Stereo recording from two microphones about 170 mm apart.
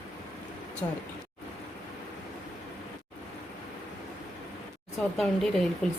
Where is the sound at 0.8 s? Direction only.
20° left (ahead or behind).